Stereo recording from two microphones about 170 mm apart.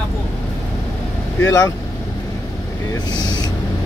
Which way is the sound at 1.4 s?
20° left (ahead or behind).